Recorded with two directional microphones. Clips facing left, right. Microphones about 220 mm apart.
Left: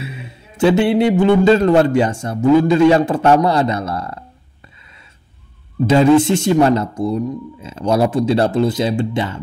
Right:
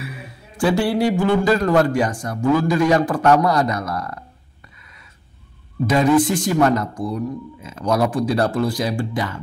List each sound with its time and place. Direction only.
0.0 s a man's voice: 25° left (ahead or behind)
5.9 s a man's voice: 25° left (ahead or behind)